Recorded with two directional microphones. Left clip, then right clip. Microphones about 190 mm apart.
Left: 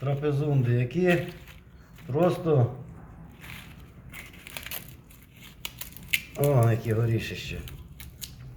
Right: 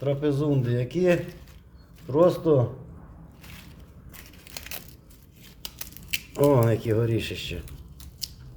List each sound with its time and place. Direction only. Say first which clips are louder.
0.0 s a man's voice: right 4 dB; 45° right (ahead or behind)
5.6 s scissors: left 1 dB; 15° right (ahead or behind)
6.3 s speech: right 7 dB; 45° right (ahead or behind)